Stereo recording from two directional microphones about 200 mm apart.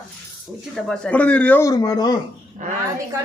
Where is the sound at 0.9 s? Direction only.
5° left (ahead or behind).